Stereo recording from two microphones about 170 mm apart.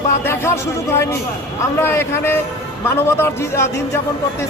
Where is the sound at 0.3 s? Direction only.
15° left (ahead or behind).